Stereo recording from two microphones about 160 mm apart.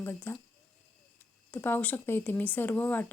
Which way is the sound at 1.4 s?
10° left (ahead or behind).